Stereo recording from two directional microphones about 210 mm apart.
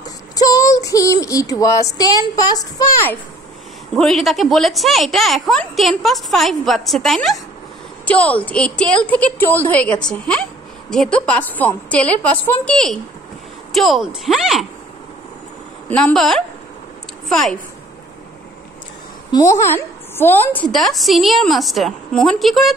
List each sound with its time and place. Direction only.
0.4 s child singing: 15° left (ahead or behind)
3.9 s a woman's voice: centre (ahead or behind)
8.0 s child singing: 5° left (ahead or behind)
10.0 s a woman's voice: 5° left (ahead or behind)
10.9 s child singing: 5° left (ahead or behind)
13.7 s a woman's voice: centre (ahead or behind)
15.9 s a woman's voice: 5° left (ahead or behind)
19.3 s a woman's voice: 15° left (ahead or behind)